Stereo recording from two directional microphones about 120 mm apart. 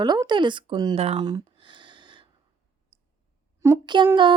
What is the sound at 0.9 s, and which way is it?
Speech, 55° right (ahead or behind).